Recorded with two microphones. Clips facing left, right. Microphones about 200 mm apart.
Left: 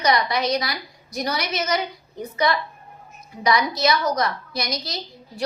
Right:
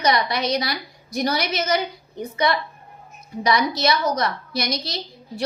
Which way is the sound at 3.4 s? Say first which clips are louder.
Even; 25° right (ahead or behind).